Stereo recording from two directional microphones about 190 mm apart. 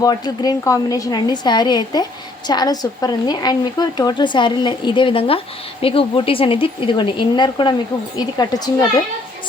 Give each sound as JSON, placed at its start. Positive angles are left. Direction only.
{"t": 0.0, "sound": "speech", "side_deg": 20}